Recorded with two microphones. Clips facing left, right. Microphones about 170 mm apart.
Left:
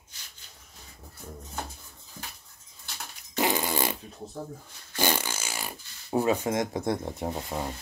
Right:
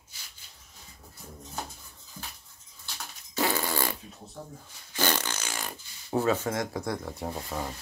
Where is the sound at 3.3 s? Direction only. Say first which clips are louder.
Left 2 dB; 15° left (ahead or behind).